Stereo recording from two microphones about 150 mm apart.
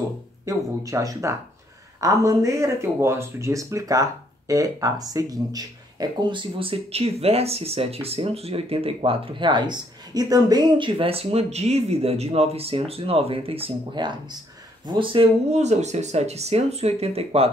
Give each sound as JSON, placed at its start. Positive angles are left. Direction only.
{"t": 0.5, "sound": "speech", "side_deg": -20}
{"t": 15.5, "sound": "speech", "side_deg": -50}